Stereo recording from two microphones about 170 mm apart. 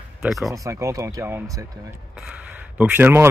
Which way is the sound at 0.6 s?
20° right (ahead or behind).